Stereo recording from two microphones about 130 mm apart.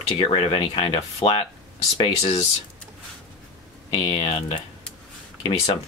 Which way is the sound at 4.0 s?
45° left (ahead or behind).